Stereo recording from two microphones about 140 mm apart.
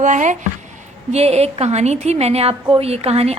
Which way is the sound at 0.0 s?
60° right (ahead or behind).